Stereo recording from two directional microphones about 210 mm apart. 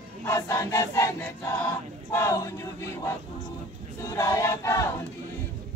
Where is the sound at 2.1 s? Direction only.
15° left (ahead or behind).